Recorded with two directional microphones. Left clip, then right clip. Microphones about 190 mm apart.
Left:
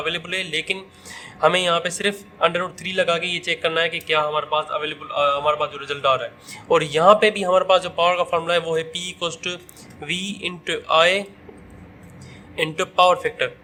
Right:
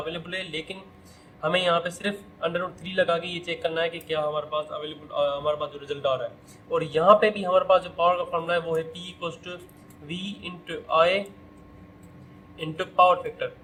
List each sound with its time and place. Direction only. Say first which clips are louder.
0.0 s a man's voice: left 7 dB; 45° left (ahead or behind)
12.5 s a man's voice: left 3 dB; 50° left (ahead or behind)